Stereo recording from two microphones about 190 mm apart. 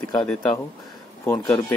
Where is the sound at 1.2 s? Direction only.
15° left (ahead or behind).